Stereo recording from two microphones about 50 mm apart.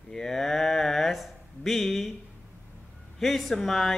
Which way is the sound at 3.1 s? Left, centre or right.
Centre.